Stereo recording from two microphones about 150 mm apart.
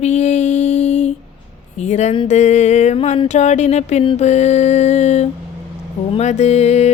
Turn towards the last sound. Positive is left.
turn(degrees=45)  # may be behind; listen again after turning